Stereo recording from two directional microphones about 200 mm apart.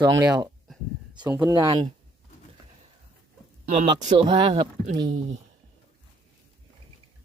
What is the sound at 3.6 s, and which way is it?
Speech, 30° right (ahead or behind).